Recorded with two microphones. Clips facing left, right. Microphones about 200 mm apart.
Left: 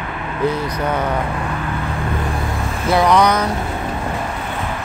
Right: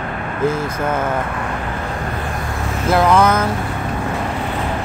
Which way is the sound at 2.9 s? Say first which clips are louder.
Even; 5° right (ahead or behind).